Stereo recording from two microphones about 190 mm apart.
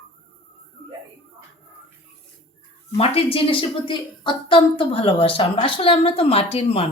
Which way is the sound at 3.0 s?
30° left (ahead or behind).